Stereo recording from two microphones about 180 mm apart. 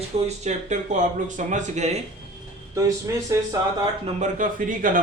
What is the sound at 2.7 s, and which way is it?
Speech, 20° right (ahead or behind).